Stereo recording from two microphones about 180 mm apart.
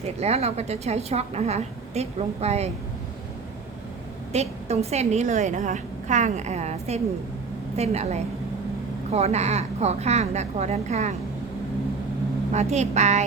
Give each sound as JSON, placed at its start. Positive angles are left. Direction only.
{"t": 0.2, "sound": "a woman's voice", "side_deg": -35}
{"t": 4.3, "sound": "a woman's voice", "side_deg": -35}
{"t": 12.5, "sound": "a woman's voice", "side_deg": -40}